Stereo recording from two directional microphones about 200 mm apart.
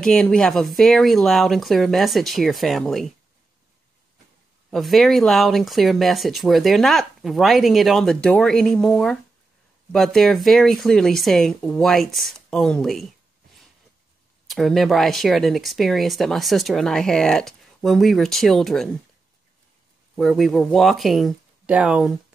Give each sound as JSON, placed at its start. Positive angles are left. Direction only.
{"t": 0.0, "sound": "speech", "side_deg": 5}
{"t": 4.6, "sound": "speech", "side_deg": 0}
{"t": 14.5, "sound": "speech", "side_deg": 0}
{"t": 20.2, "sound": "speech", "side_deg": 0}